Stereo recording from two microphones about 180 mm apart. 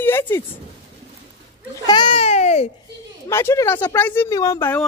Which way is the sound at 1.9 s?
25° left (ahead or behind).